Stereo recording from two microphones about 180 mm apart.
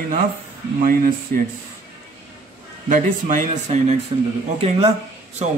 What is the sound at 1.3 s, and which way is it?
Speech, 55° right (ahead or behind).